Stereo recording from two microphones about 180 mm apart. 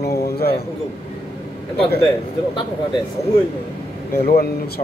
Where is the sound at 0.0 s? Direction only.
60° left (ahead or behind).